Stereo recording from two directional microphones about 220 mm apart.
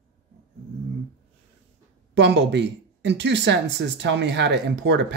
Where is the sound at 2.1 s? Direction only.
50° right (ahead or behind).